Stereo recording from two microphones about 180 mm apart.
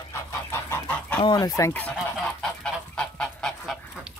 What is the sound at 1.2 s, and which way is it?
Speech, 25° left (ahead or behind).